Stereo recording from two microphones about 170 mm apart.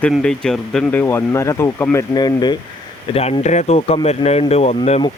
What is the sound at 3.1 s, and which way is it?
Speech, 35° left (ahead or behind).